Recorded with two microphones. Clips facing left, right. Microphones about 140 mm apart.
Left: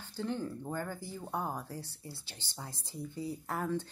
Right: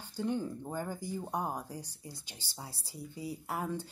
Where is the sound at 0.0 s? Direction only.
15° right (ahead or behind).